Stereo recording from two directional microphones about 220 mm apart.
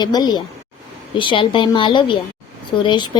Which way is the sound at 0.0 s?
20° left (ahead or behind).